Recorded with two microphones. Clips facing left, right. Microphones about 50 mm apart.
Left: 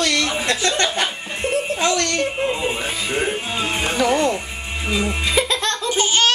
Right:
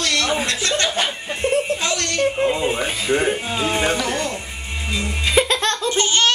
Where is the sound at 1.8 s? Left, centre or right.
Left.